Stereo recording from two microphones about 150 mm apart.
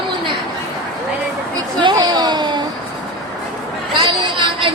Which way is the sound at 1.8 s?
30° right (ahead or behind).